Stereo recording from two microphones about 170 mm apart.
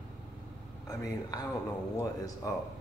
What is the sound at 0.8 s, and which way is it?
Speech, 20° left (ahead or behind).